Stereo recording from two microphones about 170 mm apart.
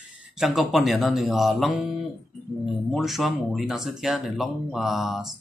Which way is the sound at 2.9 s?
Centre (ahead or behind).